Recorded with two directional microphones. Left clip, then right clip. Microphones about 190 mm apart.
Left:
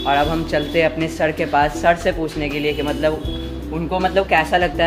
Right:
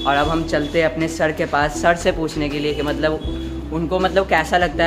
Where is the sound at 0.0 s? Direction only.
20° right (ahead or behind).